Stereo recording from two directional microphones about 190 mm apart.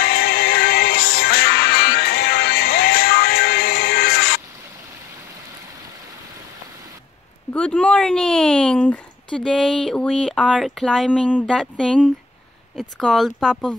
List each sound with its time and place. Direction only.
0.0 s music: 55° left (ahead or behind)
7.5 s speech: 5° left (ahead or behind)